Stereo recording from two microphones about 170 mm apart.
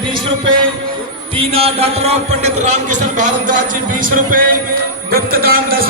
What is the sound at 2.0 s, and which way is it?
A man's voice, 40° right (ahead or behind).